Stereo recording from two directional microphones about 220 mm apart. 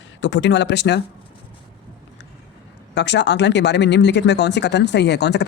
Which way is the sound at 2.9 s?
50° left (ahead or behind).